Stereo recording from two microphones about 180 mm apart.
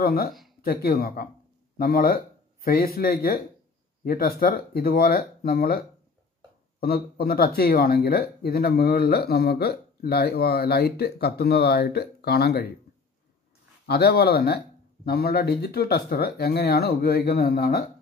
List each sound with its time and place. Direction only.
0.0 s speech: 60° left (ahead or behind)
0.3 s a sound: centre (ahead or behind)
0.6 s speech: 60° left (ahead or behind)
13.8 s speech: 65° left (ahead or behind)